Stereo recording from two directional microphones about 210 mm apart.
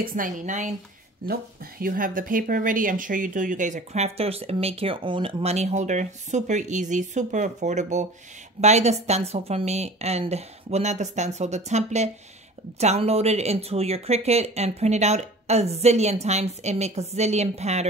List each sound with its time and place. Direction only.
0.0 s speech: 40° right (ahead or behind)